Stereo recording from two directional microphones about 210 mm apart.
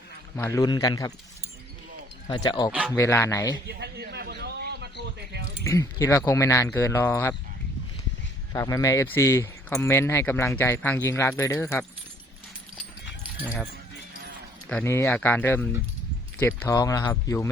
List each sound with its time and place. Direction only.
0.3 s speech: 10° left (ahead or behind)
2.3 s speech: 20° left (ahead or behind)
3.7 s a sound: 50° right (ahead or behind)
5.6 s speech: 15° left (ahead or behind)
8.5 s speech: 15° left (ahead or behind)
14.7 s speech: 10° left (ahead or behind)